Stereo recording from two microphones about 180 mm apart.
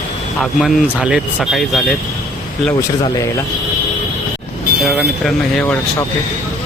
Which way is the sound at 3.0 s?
15° left (ahead or behind).